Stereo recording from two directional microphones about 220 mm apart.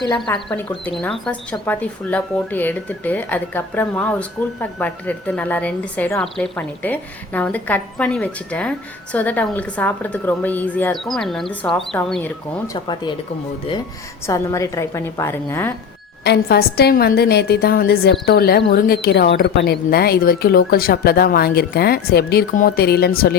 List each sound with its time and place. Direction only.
0.3 s speech: 5° left (ahead or behind)
12.6 s speech: 20° left (ahead or behind)
14.3 s speech: 15° left (ahead or behind)
16.2 s a woman's voice: 45° left (ahead or behind)